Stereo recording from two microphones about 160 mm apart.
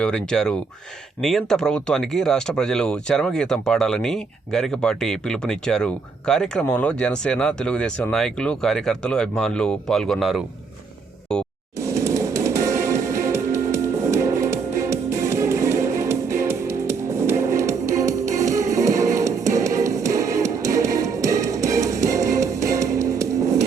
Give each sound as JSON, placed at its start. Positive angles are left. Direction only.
{"t": 0.0, "sound": "speech", "side_deg": 5}
{"t": 11.3, "sound": "a sound", "side_deg": 5}
{"t": 11.8, "sound": "music", "side_deg": -20}